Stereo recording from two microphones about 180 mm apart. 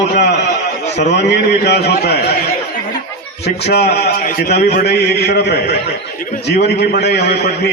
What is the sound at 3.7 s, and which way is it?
A man's voice, 65° left (ahead or behind).